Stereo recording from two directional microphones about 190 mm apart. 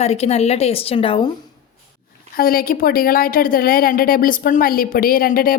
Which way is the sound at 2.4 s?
50° left (ahead or behind).